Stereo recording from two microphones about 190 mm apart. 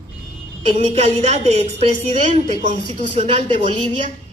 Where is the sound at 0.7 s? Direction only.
35° right (ahead or behind).